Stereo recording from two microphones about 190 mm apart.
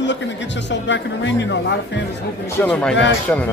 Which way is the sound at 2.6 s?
5° left (ahead or behind).